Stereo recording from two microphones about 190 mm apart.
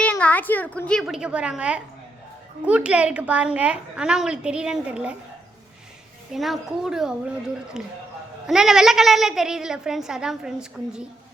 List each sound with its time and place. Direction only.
0.0 s a woman's voice: 5° left (ahead or behind)
6.3 s a woman's voice: centre (ahead or behind)